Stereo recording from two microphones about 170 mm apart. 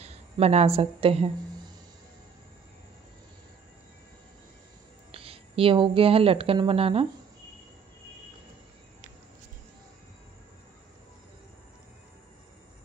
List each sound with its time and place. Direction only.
0.0 s speech: 40° right (ahead or behind)
5.1 s speech: 35° right (ahead or behind)